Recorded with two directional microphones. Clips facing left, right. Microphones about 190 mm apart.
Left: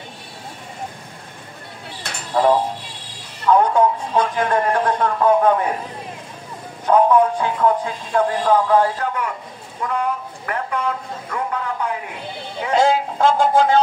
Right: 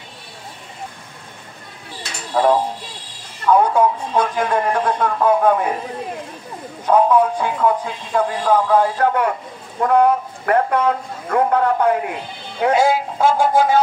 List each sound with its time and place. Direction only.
2.3 s speech: centre (ahead or behind)
6.9 s speech: 5° right (ahead or behind)
9.0 s a man's voice: 60° right (ahead or behind)
12.7 s speech: 10° right (ahead or behind)